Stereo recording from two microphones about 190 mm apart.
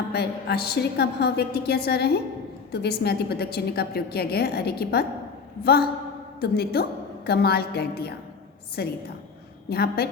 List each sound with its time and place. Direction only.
0.1 s a woman's voice: 55° left (ahead or behind)